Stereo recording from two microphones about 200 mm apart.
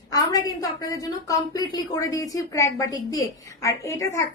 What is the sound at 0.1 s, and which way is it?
A woman's voice, 15° left (ahead or behind).